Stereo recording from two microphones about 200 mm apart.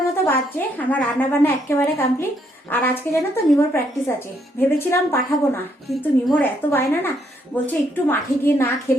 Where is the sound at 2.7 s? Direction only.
10° left (ahead or behind).